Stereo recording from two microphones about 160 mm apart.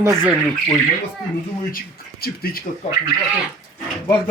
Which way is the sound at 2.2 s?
70° left (ahead or behind).